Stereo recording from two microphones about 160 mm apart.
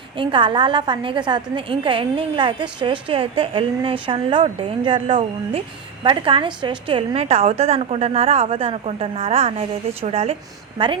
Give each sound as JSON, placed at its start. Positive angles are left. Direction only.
{"t": 0.2, "sound": "a woman's voice", "side_deg": -30}